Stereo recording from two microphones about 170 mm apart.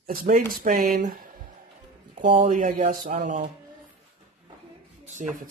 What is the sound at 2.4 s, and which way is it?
Speech, 50° right (ahead or behind).